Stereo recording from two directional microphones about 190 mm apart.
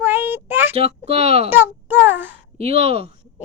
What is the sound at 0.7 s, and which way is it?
Speech, 30° right (ahead or behind).